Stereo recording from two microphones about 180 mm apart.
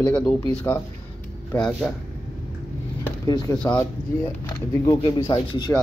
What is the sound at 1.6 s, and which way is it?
Speech, 5° left (ahead or behind).